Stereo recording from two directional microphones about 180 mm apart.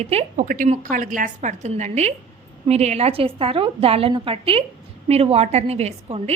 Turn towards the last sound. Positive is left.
turn(degrees=-35)  # may be behind; listen again after turning